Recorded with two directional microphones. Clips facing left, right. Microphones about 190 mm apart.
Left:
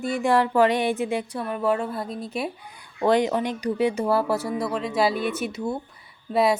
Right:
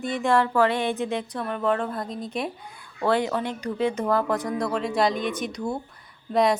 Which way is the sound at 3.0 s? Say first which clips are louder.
Left 3 dB; 15° left (ahead or behind).